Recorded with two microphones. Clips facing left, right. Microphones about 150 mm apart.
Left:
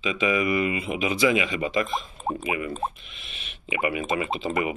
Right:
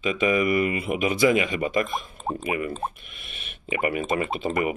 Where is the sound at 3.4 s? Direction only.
40° right (ahead or behind).